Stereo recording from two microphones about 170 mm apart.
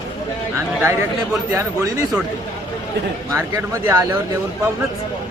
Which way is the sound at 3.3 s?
20° right (ahead or behind).